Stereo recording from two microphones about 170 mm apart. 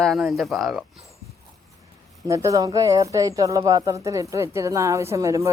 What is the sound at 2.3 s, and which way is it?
Speech, 20° right (ahead or behind).